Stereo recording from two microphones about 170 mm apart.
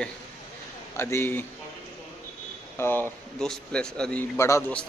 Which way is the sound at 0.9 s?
15° left (ahead or behind).